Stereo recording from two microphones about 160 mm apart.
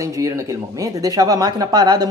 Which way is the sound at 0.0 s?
20° right (ahead or behind).